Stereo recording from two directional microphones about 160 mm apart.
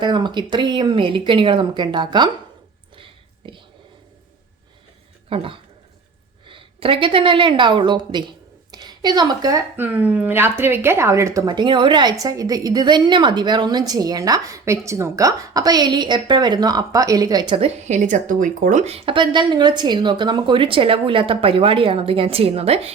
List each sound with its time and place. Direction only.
0.0 s a woman's voice: 30° right (ahead or behind)
2.9 s a sound: 35° right (ahead or behind)
5.3 s a woman's voice: 35° right (ahead or behind)
8.7 s a sound: 25° right (ahead or behind)
9.7 s a woman's voice: 10° right (ahead or behind); by 17.7 s 30° right (ahead or behind)
17.8 s a woman's voice: 50° right (ahead or behind)